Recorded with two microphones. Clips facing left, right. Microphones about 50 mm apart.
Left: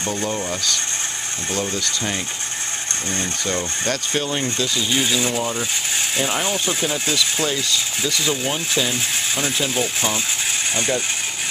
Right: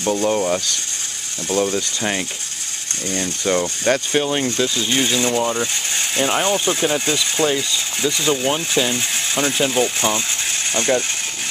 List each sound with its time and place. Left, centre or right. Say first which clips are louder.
0.0 s speech: right 6 dB; right
3.4 s speech: right 7 dB; right
4.9 s speech: right 3 dB; centre
5.6 s mechanisms: right 1 dB; centre
6.4 s speech: right 4 dB; centre